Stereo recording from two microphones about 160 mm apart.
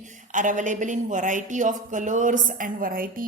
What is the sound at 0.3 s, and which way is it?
A woman's voice, 55° right (ahead or behind).